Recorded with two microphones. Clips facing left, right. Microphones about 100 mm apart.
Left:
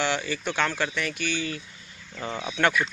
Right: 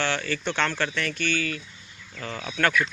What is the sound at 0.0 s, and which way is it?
Speech, 15° left (ahead or behind).